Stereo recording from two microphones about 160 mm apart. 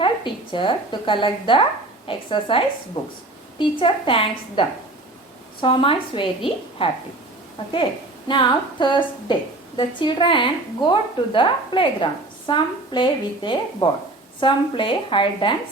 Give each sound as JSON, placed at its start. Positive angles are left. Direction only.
{"t": 0.5, "sound": "a woman's voice", "side_deg": 30}
{"t": 8.3, "sound": "a woman's voice", "side_deg": 30}